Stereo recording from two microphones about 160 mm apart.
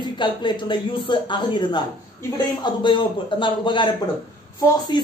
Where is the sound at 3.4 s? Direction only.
30° left (ahead or behind).